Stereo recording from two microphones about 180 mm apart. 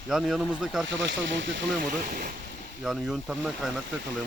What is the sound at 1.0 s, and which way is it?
Speech, 80° right.